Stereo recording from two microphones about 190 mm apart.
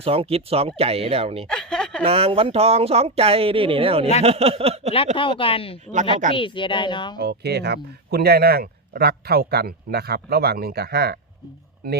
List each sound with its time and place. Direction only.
0.0 s speech: 30° right (ahead or behind)
1.5 s a sound: 5° left (ahead or behind)
2.0 s speech: 30° right (ahead or behind)
5.1 s a woman's voice: 25° left (ahead or behind)
7.2 s speech: 60° right (ahead or behind)